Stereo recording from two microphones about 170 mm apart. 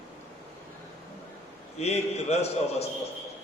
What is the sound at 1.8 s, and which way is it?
A man's voice, 40° left (ahead or behind).